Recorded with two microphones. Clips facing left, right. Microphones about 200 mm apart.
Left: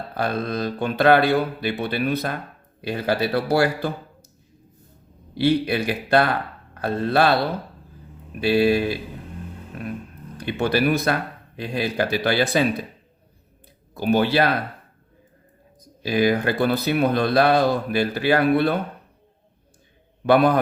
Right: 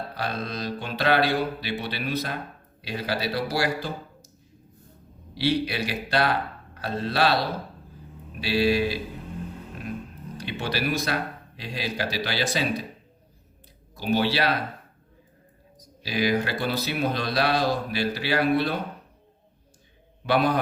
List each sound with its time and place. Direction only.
0.1 s mantra: 55° left (ahead or behind)
2.8 s speech: 55° left (ahead or behind)
5.3 s mantra: 55° left (ahead or behind)
6.7 s speech: 55° left (ahead or behind)
8.4 s mantra: 55° left (ahead or behind)
10.4 s speech: 55° left (ahead or behind)
13.9 s mantra: 55° left (ahead or behind)
15.8 s speech: 55° left (ahead or behind)
20.2 s mantra: 55° left (ahead or behind)